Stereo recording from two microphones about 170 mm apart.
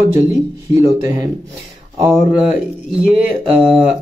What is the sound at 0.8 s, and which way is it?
Speech, 20° right (ahead or behind).